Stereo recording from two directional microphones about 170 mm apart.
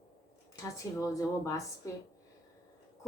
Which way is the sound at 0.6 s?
20° left (ahead or behind).